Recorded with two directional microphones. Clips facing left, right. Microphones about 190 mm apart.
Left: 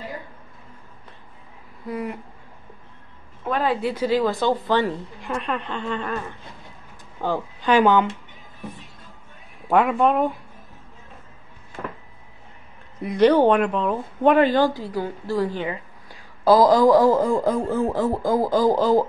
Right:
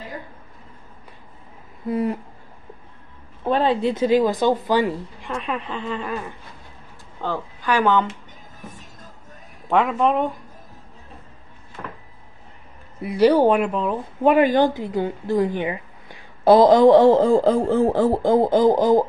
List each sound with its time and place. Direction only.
1.9 s speech: 25° right (ahead or behind)
3.4 s speech: 30° right (ahead or behind); by 5.0 s 10° right (ahead or behind)
5.2 s a woman's voice: centre (ahead or behind)
7.2 s speech: 15° left (ahead or behind)
8.5 s music: 45° right (ahead or behind)
9.7 s a woman's voice: 5° left (ahead or behind)
13.0 s speech: 5° right (ahead or behind)